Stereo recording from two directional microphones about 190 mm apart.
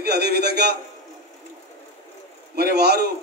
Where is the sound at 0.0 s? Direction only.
60° right (ahead or behind).